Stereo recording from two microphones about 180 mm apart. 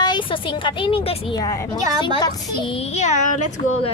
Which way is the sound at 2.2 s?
30° left (ahead or behind).